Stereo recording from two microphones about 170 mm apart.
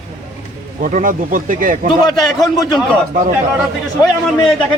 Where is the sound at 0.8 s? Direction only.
50° right (ahead or behind).